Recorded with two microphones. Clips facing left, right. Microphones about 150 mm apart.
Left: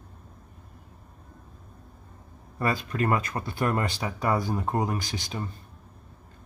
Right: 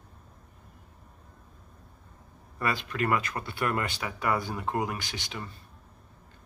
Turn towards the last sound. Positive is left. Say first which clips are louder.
# left 5 dB
turn(degrees=40)  # may be behind; listen again after turning